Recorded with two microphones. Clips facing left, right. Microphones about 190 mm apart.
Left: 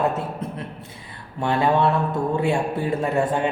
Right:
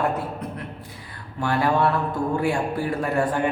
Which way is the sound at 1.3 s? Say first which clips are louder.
Left 2 dB; 25° left (ahead or behind).